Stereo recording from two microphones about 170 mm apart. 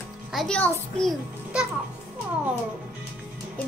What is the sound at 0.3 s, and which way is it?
Speech, centre (ahead or behind).